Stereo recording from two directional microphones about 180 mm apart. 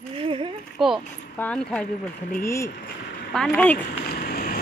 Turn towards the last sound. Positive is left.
turn(degrees=55)  # may be behind; listen again after turning